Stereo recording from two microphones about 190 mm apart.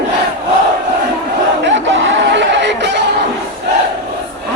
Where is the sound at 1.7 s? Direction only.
75° right (ahead or behind).